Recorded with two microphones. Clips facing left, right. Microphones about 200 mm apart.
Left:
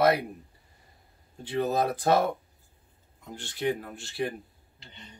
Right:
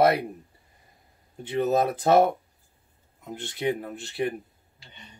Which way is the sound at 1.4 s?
20° right (ahead or behind).